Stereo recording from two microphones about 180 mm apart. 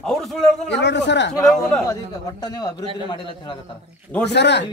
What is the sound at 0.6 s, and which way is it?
Speech, 75° left (ahead or behind).